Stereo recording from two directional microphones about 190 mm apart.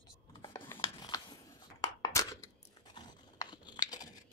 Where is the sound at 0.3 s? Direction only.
20° left (ahead or behind).